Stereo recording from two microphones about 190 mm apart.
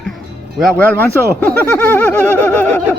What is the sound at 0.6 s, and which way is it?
Speech, 10° left (ahead or behind).